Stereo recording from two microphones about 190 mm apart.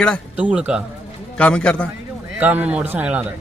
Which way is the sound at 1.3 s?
5° left (ahead or behind).